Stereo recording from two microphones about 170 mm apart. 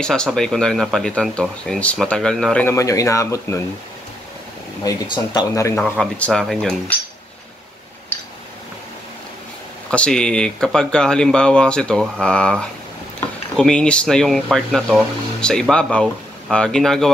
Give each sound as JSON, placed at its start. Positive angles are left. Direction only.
{"t": 0.0, "sound": "speech", "side_deg": 5}
{"t": 2.6, "sound": "speech", "side_deg": 15}
{"t": 4.8, "sound": "speech", "side_deg": 25}
{"t": 9.8, "sound": "speech", "side_deg": 5}